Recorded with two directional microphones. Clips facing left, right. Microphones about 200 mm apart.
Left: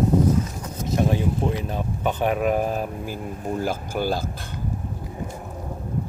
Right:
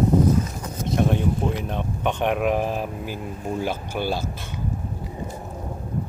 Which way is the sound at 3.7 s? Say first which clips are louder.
Left 1 dB; 40° left (ahead or behind).